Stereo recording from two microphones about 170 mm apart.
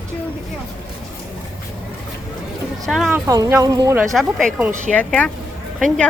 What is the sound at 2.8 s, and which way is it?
Speech, centre (ahead or behind).